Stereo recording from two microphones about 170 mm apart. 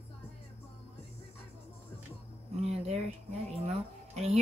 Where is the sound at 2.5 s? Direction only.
40° right (ahead or behind).